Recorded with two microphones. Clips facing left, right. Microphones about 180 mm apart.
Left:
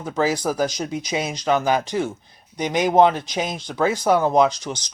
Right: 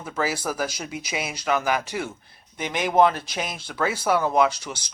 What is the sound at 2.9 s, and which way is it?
Speech, 20° left (ahead or behind).